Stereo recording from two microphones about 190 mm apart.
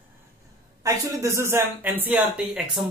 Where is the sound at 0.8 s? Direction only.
15° right (ahead or behind).